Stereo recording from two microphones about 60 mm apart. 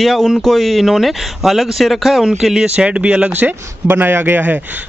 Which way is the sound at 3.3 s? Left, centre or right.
Right.